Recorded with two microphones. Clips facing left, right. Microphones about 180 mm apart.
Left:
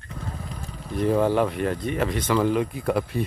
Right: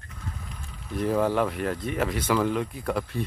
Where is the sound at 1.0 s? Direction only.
Centre (ahead or behind).